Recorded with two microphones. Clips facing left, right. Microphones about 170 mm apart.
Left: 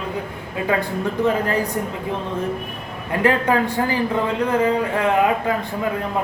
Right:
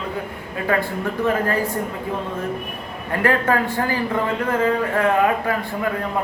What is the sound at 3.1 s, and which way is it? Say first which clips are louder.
A woman's voice: left 1 dB; 15° left (ahead or behind).